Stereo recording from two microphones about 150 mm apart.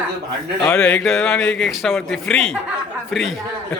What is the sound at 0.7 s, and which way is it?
Speech, 10° left (ahead or behind).